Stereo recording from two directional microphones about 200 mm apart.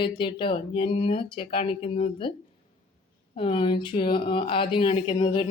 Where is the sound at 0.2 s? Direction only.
25° left (ahead or behind).